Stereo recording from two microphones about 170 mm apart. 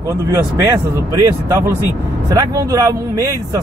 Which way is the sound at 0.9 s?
15° right (ahead or behind).